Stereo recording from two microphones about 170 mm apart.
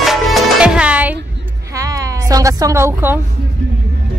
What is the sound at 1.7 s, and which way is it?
Music, 20° right (ahead or behind).